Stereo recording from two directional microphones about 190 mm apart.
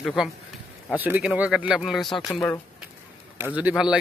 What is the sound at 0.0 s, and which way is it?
Speech, 5° right (ahead or behind).